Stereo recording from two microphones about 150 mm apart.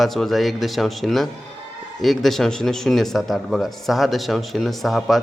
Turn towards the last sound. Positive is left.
turn(degrees=0)  # may be behind; listen again after turning